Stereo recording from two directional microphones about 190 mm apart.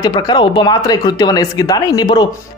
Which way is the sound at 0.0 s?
20° left (ahead or behind).